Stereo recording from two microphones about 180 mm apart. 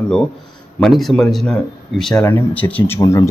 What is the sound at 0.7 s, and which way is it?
Speech, centre (ahead or behind).